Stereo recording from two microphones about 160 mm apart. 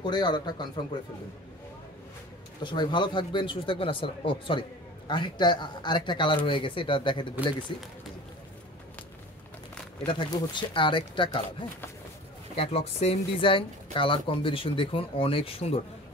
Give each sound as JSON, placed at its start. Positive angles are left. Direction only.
{"t": 0.0, "sound": "speech", "side_deg": 25}
{"t": 2.6, "sound": "speech", "side_deg": 30}
{"t": 10.0, "sound": "speech", "side_deg": 30}
{"t": 12.5, "sound": "speech", "side_deg": 40}